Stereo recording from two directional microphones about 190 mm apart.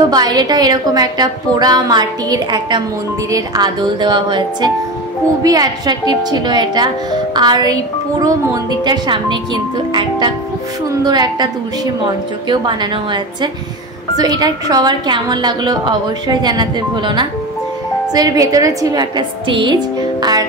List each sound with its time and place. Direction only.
0.1 s a woman's voice: 20° right (ahead or behind)